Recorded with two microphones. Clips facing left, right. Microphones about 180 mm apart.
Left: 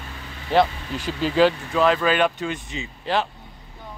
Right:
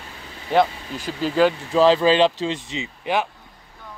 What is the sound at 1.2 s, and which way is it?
Speech, 5° right (ahead or behind).